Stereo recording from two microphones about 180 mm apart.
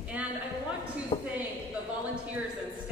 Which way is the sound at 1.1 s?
30° left (ahead or behind).